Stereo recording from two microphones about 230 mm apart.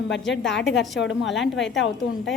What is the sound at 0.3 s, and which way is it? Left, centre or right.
A woman's voice, centre.